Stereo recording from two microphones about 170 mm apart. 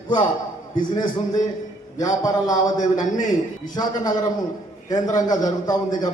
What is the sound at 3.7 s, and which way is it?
A man's voice, 25° left (ahead or behind).